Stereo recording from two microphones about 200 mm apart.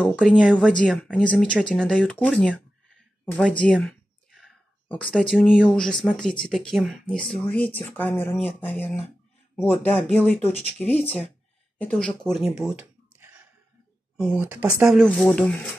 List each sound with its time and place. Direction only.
0.0 s speech: 5° left (ahead or behind)
10.5 s speech: 30° right (ahead or behind)
11.8 s speech: 5° left (ahead or behind); by 15.0 s 10° right (ahead or behind)
15.0 s speech: centre (ahead or behind)